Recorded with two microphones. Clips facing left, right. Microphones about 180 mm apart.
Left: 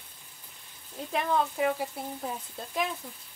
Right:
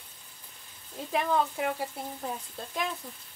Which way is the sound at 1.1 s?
Centre (ahead or behind).